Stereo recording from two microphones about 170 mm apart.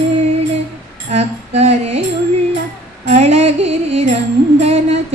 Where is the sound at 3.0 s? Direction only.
40° right (ahead or behind).